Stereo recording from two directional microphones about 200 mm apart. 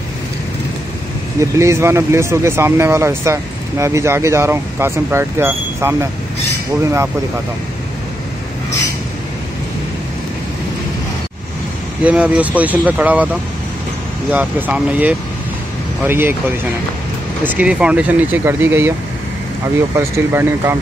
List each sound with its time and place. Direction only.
1.4 s speech: 15° right (ahead or behind)
12.0 s speech: 5° right (ahead or behind)
17.5 s speech: 5° right (ahead or behind)
20.0 s speech: 10° right (ahead or behind)